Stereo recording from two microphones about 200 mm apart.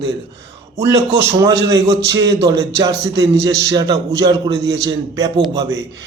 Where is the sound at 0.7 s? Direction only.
15° right (ahead or behind).